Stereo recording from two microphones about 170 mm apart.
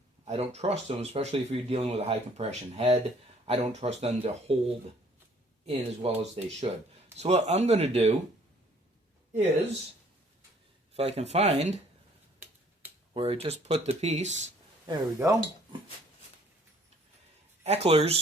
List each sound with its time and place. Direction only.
0.3 s speech: 40° right (ahead or behind)
5.6 s speech: 35° right (ahead or behind)
10.9 s speech: 40° right (ahead or behind)
13.1 s speech: 35° right (ahead or behind)
14.8 s speech: 20° right (ahead or behind)
17.6 s speech: 40° right (ahead or behind)